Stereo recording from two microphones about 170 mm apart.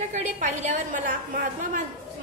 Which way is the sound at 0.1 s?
45° right (ahead or behind).